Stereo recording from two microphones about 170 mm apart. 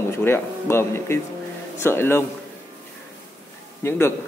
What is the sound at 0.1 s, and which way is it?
A man's voice, 15° left (ahead or behind).